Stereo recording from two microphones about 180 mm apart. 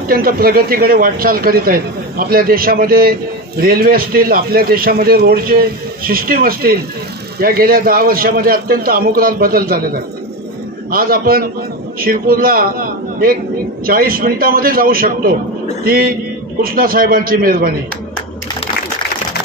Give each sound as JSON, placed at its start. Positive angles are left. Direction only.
{"t": 0.1, "sound": "a man's voice", "side_deg": -55}